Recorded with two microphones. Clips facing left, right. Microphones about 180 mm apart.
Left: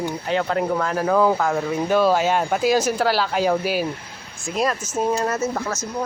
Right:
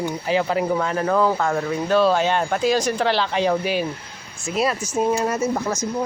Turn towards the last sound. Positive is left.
turn(degrees=-15)  # may be behind; listen again after turning